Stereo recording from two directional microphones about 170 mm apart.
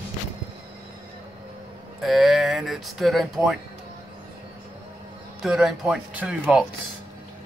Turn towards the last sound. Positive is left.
turn(degrees=-5)  # may be behind; listen again after turning